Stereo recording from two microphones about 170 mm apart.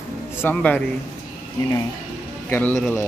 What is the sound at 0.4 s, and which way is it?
Speech, 10° left (ahead or behind).